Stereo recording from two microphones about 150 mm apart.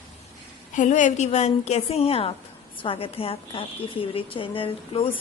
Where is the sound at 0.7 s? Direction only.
55° left (ahead or behind).